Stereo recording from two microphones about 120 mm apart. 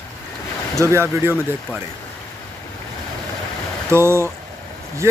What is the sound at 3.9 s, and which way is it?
Speech, 20° right (ahead or behind).